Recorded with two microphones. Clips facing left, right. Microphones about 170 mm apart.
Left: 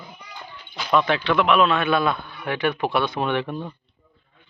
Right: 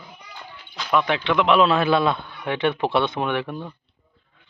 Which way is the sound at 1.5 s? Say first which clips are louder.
Right 3 dB; 30° right (ahead or behind).